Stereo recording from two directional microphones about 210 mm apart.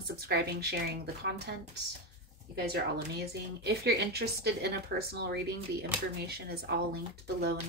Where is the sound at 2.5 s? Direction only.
50° right (ahead or behind).